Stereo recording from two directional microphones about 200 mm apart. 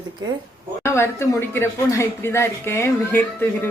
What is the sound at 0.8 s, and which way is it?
Speech, 15° left (ahead or behind).